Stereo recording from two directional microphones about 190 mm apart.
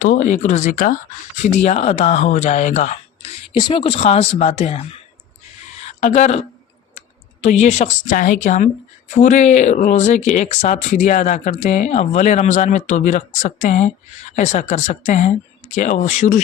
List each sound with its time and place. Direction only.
0.0 s speech: 45° left (ahead or behind)
1.4 s a woman's voice: 35° left (ahead or behind)
7.4 s a woman's voice: 35° left (ahead or behind)